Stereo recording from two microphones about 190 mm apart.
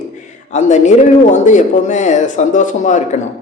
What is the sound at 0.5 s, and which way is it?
Speech, 40° left (ahead or behind).